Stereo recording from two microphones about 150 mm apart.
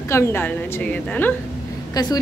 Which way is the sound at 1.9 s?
25° left (ahead or behind).